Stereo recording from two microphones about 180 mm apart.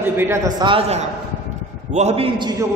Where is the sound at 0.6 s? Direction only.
30° right (ahead or behind).